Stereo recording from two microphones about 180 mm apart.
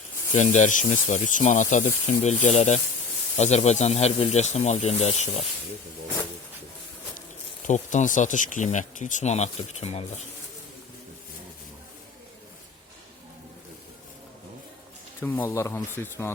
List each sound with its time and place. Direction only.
0.3 s speech: 40° left (ahead or behind)
7.6 s speech: 45° left (ahead or behind)
15.2 s speech: 10° left (ahead or behind)